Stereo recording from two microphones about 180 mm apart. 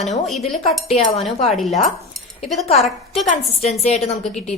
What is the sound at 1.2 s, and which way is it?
Speech, centre (ahead or behind).